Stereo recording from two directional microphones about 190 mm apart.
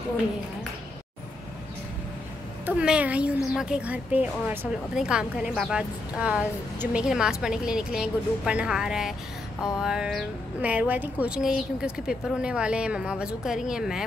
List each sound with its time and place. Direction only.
2.6 s a woman's voice: 5° right (ahead or behind)